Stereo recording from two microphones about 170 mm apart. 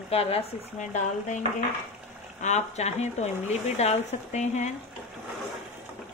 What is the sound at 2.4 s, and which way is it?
Speech, 40° left (ahead or behind).